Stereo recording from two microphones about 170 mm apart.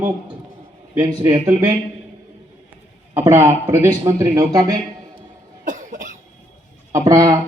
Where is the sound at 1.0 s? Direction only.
20° right (ahead or behind).